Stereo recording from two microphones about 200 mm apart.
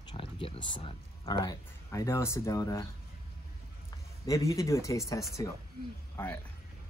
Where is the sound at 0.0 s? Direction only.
25° left (ahead or behind).